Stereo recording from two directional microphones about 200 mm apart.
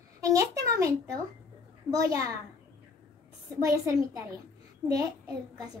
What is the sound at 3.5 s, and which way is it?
Speech, 15° right (ahead or behind).